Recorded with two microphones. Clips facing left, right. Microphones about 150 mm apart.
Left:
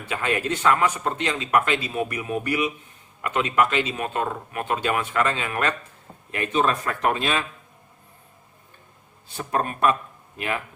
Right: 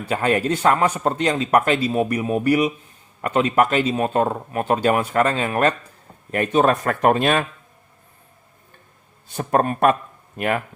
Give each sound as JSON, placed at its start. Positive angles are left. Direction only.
{"t": 0.1, "sound": "a man's voice", "side_deg": -35}
{"t": 6.3, "sound": "speech", "side_deg": -45}
{"t": 9.3, "sound": "speech", "side_deg": -50}